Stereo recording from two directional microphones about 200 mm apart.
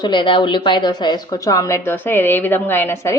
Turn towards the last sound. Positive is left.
turn(degrees=15)  # may be behind; listen again after turning